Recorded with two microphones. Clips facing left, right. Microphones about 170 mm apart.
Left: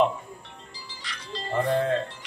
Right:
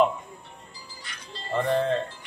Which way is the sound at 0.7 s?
90° left.